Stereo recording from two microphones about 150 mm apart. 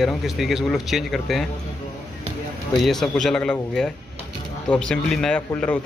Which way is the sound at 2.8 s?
Centre (ahead or behind).